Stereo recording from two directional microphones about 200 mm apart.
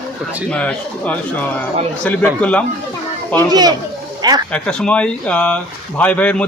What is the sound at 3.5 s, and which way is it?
Speech, 20° right (ahead or behind).